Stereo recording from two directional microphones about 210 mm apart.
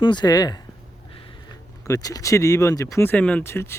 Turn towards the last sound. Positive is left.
turn(degrees=10)  # may be behind; listen again after turning